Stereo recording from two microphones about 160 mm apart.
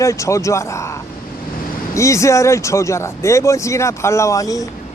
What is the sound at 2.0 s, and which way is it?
Speech, 20° left (ahead or behind).